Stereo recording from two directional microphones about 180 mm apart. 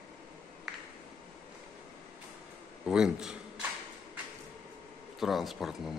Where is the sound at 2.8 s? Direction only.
5° right (ahead or behind).